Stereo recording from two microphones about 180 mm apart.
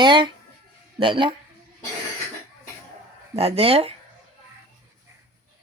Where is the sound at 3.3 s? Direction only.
35° right (ahead or behind).